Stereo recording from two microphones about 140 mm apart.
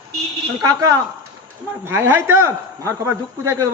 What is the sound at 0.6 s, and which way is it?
A man's voice, 25° right (ahead or behind).